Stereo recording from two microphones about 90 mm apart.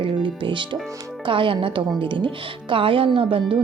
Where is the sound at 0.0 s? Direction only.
65° right (ahead or behind).